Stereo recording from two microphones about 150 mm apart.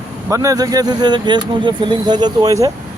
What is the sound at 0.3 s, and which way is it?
Speech, 20° right (ahead or behind).